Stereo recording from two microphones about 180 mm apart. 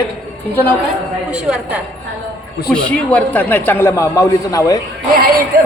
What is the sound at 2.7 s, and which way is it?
A man's voice, 5° left (ahead or behind).